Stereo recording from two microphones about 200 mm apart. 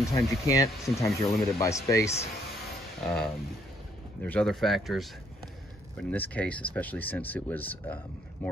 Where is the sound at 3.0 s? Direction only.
Centre (ahead or behind).